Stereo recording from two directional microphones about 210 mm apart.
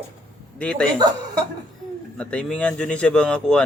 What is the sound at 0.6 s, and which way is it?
Speech, 5° left (ahead or behind).